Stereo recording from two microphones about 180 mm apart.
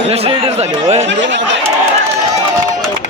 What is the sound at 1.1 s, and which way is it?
Chatter, 85° right.